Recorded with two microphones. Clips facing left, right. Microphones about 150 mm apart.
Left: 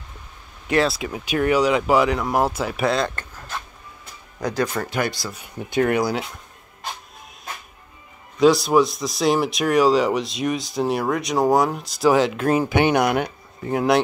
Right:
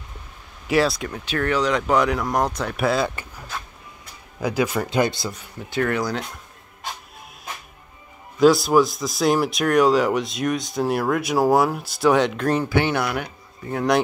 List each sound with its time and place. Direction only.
0.7 s speech: centre (ahead or behind)
4.8 s speech: 20° right (ahead or behind)
5.4 s speech: 15° left (ahead or behind)
8.4 s speech: centre (ahead or behind)
12.6 s speech: 15° left (ahead or behind)